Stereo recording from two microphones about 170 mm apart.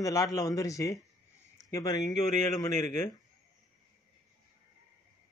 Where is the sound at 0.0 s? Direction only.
20° left (ahead or behind).